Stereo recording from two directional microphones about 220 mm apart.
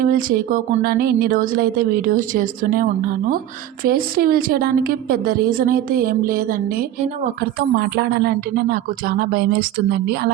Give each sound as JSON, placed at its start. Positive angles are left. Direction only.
{"t": 0.0, "sound": "a woman's voice", "side_deg": -40}
{"t": 3.8, "sound": "a woman's voice", "side_deg": -40}
{"t": 7.9, "sound": "speech", "side_deg": -45}